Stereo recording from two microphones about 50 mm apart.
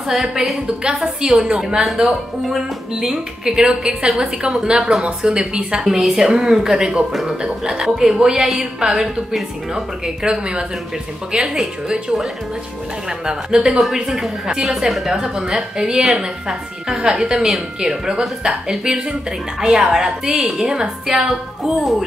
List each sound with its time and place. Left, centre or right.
0.1 s a woman's voice: centre
13.9 s a woman's voice: centre